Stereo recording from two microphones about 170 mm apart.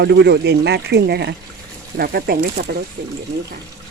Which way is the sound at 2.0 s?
65° right (ahead or behind).